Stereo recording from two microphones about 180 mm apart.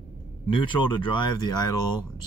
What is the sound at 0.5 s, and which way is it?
Speech, 25° left (ahead or behind).